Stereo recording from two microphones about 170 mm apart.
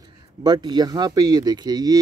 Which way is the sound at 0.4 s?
25° right (ahead or behind).